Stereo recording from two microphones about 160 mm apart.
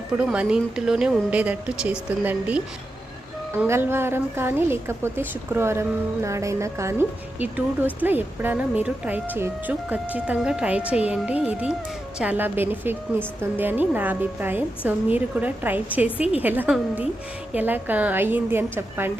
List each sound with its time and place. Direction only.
0.2 s a woman's voice: 5° right (ahead or behind)
6.2 s music: 20° right (ahead or behind)
7.3 s a woman's voice: 10° right (ahead or behind)